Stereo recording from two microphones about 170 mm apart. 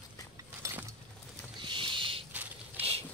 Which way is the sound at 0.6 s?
15° right (ahead or behind).